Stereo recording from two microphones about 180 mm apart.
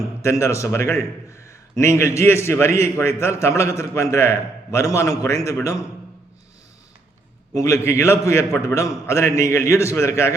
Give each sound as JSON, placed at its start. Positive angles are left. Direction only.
{"t": 0.2, "sound": "a man's voice", "side_deg": 15}
{"t": 7.5, "sound": "a man's voice", "side_deg": 15}